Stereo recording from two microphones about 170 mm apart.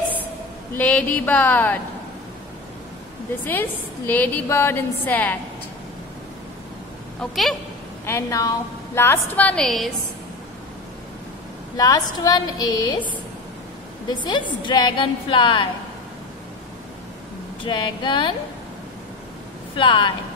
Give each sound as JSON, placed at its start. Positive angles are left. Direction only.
{"t": 0.7, "sound": "a woman's voice", "side_deg": 10}
{"t": 3.4, "sound": "a woman's voice", "side_deg": 10}
{"t": 7.2, "sound": "a woman's voice", "side_deg": 0}
{"t": 8.0, "sound": "a woman's voice", "side_deg": 15}
{"t": 11.7, "sound": "a woman's voice", "side_deg": 20}
{"t": 14.2, "sound": "a woman's voice", "side_deg": 25}
{"t": 17.6, "sound": "a woman's voice", "side_deg": 25}
{"t": 19.7, "sound": "a woman's voice", "side_deg": 30}